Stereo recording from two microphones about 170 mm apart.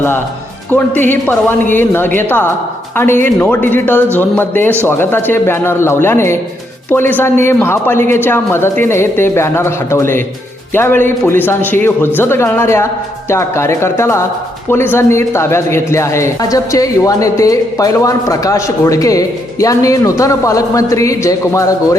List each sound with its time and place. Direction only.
1.0 s a man's voice: 10° left (ahead or behind)